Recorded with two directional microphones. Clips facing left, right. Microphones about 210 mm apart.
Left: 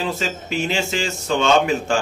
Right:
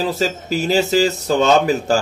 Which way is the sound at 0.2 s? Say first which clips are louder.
Right 4 dB; 40° right (ahead or behind).